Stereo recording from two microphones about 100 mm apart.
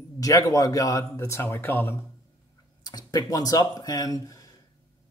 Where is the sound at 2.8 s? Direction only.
40° left (ahead or behind).